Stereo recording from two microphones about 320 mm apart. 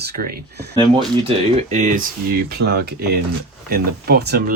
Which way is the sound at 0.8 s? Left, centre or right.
Centre.